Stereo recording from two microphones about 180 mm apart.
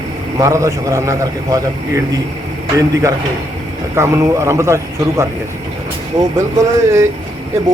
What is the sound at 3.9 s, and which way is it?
A man's voice, 15° right (ahead or behind).